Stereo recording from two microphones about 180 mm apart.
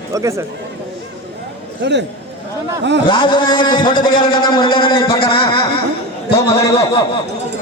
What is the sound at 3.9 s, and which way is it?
Speech, 50° left (ahead or behind).